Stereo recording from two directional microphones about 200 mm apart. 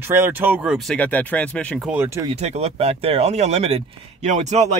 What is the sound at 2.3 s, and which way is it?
Speech, 35° right (ahead or behind).